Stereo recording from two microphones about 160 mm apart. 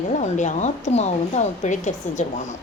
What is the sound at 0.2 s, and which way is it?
A woman's voice, 50° left (ahead or behind).